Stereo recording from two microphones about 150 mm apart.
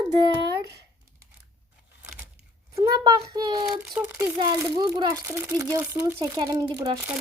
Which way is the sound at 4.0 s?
15° right (ahead or behind).